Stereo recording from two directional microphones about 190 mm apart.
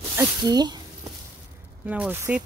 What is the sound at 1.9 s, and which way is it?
Speech, 10° right (ahead or behind).